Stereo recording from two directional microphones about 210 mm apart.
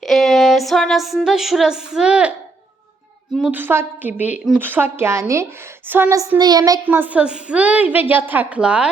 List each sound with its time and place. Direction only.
0.0 s female singing: centre (ahead or behind)
3.3 s child singing: 5° right (ahead or behind)